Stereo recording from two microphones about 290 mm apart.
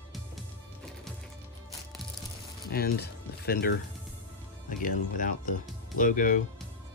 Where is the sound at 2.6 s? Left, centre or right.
Left.